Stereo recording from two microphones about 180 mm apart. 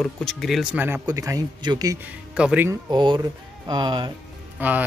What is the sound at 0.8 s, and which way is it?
Speech, 15° right (ahead or behind).